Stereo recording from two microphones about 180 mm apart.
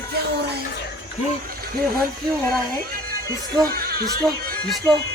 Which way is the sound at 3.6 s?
55° right (ahead or behind).